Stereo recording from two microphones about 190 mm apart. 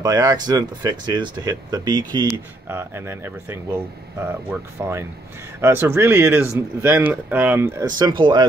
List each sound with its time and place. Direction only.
0.0 s speech: 20° right (ahead or behind)